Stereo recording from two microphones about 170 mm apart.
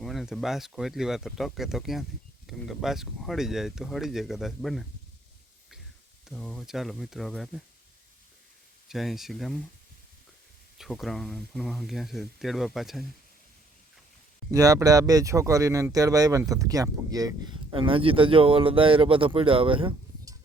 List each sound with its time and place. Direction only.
0.0 s speech: centre (ahead or behind)
6.2 s speech: 5° left (ahead or behind)
8.9 s speech: centre (ahead or behind)
10.8 s speech: centre (ahead or behind)
14.5 s speech: 20° right (ahead or behind)